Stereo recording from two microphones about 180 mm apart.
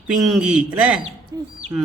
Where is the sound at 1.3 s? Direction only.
20° right (ahead or behind).